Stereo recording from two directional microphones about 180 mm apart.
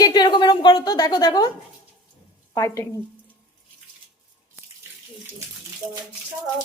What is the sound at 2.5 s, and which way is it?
Speech, 15° left (ahead or behind).